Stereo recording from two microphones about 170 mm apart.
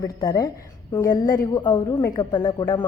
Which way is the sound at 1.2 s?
55° left (ahead or behind).